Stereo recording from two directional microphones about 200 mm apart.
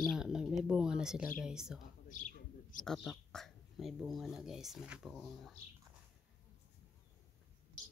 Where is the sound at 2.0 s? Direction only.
40° left (ahead or behind).